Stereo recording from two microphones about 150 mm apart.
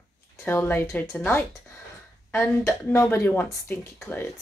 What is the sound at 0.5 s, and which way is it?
A woman's voice, 15° left (ahead or behind).